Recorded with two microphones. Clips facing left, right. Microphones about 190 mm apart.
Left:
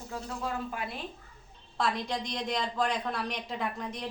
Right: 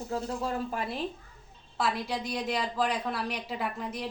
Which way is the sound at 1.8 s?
5° right (ahead or behind).